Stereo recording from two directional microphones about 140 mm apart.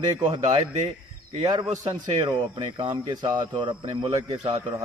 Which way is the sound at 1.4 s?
25° right (ahead or behind).